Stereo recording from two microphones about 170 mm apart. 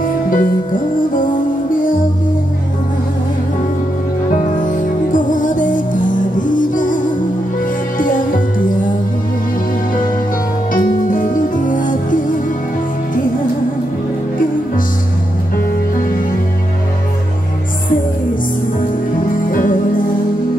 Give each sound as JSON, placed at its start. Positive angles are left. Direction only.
{"t": 0.3, "sound": "music", "side_deg": 55}
{"t": 4.5, "sound": "music", "side_deg": 50}
{"t": 10.7, "sound": "music", "side_deg": 55}
{"t": 19.5, "sound": "music", "side_deg": 55}